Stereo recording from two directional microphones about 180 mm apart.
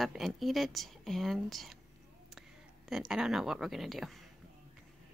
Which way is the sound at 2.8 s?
Centre (ahead or behind).